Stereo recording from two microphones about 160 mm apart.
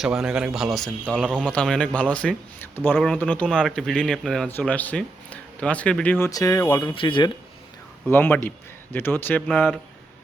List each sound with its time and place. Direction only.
0.0 s speech: centre (ahead or behind); by 6.9 s 20° left (ahead or behind)
6.9 s speech: 30° left (ahead or behind)
8.1 s speech: 15° left (ahead or behind)